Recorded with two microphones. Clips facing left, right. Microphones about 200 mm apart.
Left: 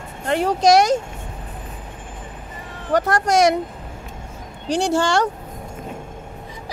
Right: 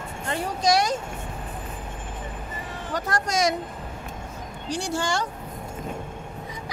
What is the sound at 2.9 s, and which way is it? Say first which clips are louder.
Speech: left 9 dB; 70° left (ahead or behind).